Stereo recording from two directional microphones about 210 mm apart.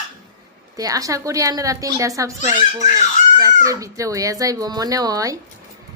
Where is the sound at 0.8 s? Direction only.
15° right (ahead or behind).